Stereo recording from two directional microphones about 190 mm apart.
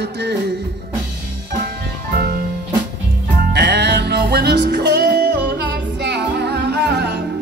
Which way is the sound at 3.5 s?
60° right (ahead or behind).